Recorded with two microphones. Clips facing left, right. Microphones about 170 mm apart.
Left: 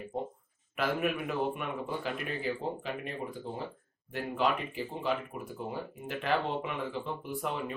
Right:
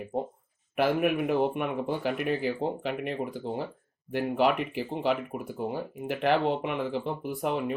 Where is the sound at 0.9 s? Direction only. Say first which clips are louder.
Right 6 dB; 60° right (ahead or behind).